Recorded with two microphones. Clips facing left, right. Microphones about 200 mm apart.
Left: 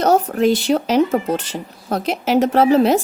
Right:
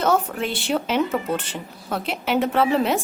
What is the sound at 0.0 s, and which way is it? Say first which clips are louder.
A woman's voice: left 7 dB; 40° left (ahead or behind).